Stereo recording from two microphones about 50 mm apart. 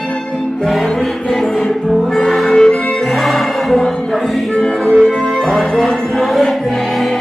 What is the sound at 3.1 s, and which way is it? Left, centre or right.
Music, centre.